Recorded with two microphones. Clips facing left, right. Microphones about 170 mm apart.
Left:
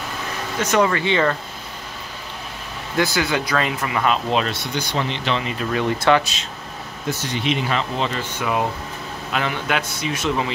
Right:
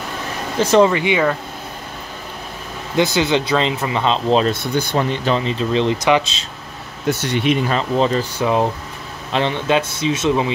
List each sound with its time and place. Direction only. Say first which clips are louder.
0.6 s speech: right 6 dB; 30° right (ahead or behind)
0.9 s speech: right 2 dB; 15° right (ahead or behind)
3.0 s speech: right 4 dB; 25° right (ahead or behind)
4.5 s speech: right 6 dB; 50° right (ahead or behind); by 6.3 s 20° right (ahead or behind)
7.1 s speech: right 6 dB; 60° right (ahead or behind)
7.7 s speech: right 6 dB; 35° right (ahead or behind); by 10.5 s 20° right (ahead or behind)